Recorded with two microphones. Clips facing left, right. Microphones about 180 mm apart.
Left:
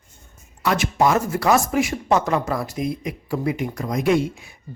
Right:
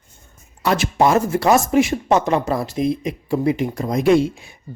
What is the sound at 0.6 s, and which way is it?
Speech, 30° right (ahead or behind).